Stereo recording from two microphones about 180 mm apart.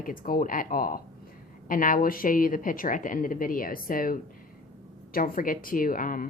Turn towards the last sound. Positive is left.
turn(degrees=50)  # may be behind; listen again after turning